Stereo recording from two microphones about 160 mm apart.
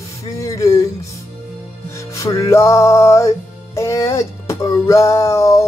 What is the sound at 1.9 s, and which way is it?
Music, 20° left (ahead or behind).